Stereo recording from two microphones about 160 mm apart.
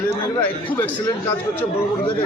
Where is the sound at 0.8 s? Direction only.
20° left (ahead or behind).